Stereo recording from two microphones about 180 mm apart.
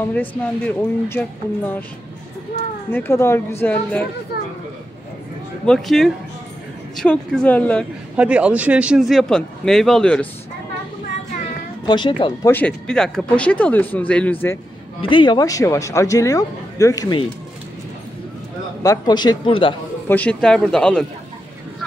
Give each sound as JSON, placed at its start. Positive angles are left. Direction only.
{"t": 0.1, "sound": "speech", "side_deg": 10}
{"t": 2.9, "sound": "speech", "side_deg": 15}
{"t": 5.7, "sound": "a man's voice", "side_deg": 0}
{"t": 8.2, "sound": "a man's voice", "side_deg": -5}
{"t": 11.8, "sound": "speech", "side_deg": 25}
{"t": 12.4, "sound": "speech", "side_deg": 10}
{"t": 15.0, "sound": "speech", "side_deg": 30}
{"t": 18.8, "sound": "speech", "side_deg": 20}
{"t": 20.1, "sound": "a man's voice", "side_deg": 10}